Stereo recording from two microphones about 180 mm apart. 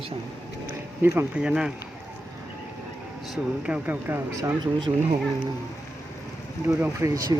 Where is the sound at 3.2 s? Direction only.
5° right (ahead or behind); by 5.0 s 20° right (ahead or behind).